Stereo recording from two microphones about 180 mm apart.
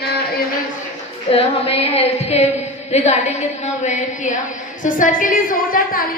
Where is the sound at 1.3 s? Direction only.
35° left (ahead or behind).